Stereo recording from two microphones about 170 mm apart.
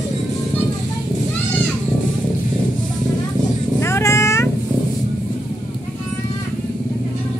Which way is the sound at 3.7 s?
15° left (ahead or behind).